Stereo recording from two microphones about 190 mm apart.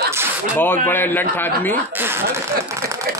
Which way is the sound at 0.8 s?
10° left (ahead or behind).